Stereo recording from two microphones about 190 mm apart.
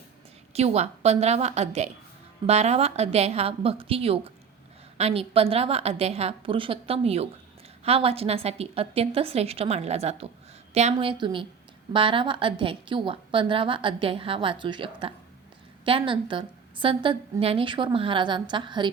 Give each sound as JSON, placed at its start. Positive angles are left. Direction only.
{"t": 0.5, "sound": "a woman's voice", "side_deg": -35}